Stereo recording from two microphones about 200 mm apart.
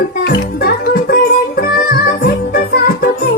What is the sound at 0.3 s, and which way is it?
Music, 50° left (ahead or behind).